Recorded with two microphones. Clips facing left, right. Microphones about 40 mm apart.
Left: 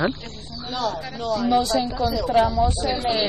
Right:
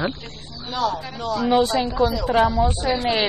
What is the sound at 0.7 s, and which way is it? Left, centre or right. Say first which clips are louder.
Speech: right 3 dB; centre.